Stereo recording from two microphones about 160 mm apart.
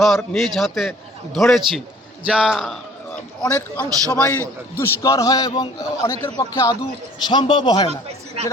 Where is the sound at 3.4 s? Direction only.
20° left (ahead or behind).